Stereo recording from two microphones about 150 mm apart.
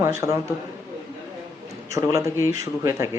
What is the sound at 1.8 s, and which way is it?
A man's voice, 20° right (ahead or behind).